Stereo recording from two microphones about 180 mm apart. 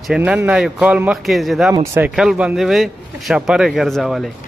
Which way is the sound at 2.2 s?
5° right (ahead or behind).